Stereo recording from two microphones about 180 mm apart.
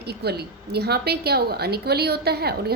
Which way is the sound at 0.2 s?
65° right (ahead or behind).